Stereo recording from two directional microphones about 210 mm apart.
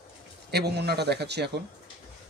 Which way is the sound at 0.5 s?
50° right (ahead or behind).